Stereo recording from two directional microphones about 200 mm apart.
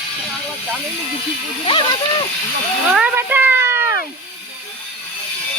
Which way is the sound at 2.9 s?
5° right (ahead or behind).